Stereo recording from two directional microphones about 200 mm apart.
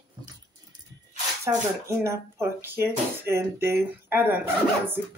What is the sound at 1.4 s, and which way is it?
Speech, 15° right (ahead or behind).